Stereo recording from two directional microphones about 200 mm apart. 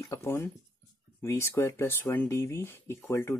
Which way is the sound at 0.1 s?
15° left (ahead or behind).